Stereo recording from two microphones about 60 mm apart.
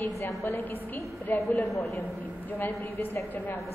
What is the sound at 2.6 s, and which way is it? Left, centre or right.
Speech, left.